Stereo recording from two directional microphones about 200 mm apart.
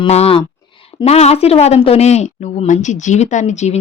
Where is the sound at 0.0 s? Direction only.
30° left (ahead or behind).